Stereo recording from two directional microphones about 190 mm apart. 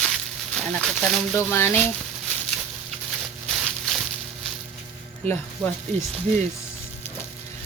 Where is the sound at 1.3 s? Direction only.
10° left (ahead or behind).